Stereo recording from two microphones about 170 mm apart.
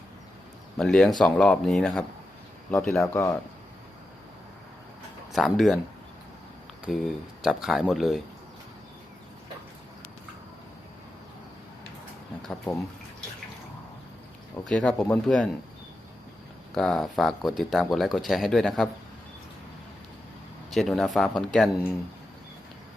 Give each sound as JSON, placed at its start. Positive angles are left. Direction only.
{"t": 0.8, "sound": "speech", "side_deg": 5}
{"t": 3.0, "sound": "speech", "side_deg": 15}
{"t": 5.3, "sound": "speech", "side_deg": 0}
{"t": 6.8, "sound": "speech", "side_deg": 0}
{"t": 12.4, "sound": "speech", "side_deg": 5}
{"t": 14.7, "sound": "speech", "side_deg": 5}
{"t": 16.7, "sound": "speech", "side_deg": 0}
{"t": 20.7, "sound": "speech", "side_deg": 0}